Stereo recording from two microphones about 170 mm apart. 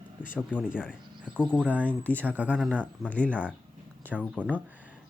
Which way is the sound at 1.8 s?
10° left (ahead or behind).